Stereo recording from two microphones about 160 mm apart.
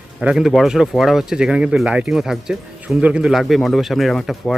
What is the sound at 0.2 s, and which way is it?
Speech, 5° right (ahead or behind).